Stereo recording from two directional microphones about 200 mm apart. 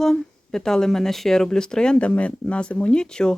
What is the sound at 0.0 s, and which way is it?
Speech, centre (ahead or behind).